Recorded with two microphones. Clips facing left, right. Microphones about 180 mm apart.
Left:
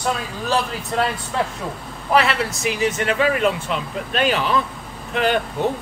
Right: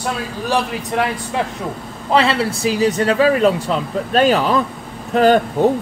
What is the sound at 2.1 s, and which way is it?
Speech, 30° right (ahead or behind).